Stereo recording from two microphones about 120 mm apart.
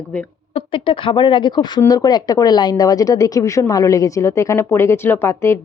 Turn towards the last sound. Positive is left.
turn(degrees=25)  # may be behind; listen again after turning